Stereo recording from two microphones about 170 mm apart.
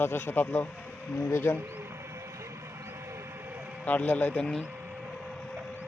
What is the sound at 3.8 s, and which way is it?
Speech, 10° left (ahead or behind).